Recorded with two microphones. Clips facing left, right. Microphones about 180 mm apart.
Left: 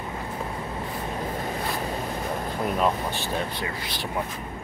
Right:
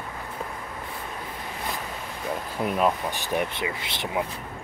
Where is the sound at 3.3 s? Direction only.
20° right (ahead or behind).